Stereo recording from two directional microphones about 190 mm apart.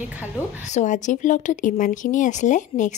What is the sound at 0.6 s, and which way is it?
Speech, 40° left (ahead or behind).